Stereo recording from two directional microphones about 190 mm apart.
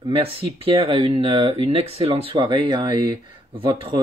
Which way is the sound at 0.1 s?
30° right (ahead or behind).